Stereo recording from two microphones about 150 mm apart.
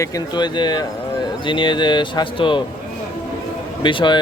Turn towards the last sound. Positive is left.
turn(degrees=30)  # may be behind; listen again after turning